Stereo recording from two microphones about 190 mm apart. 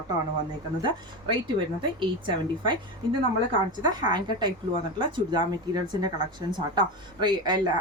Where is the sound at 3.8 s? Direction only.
25° right (ahead or behind).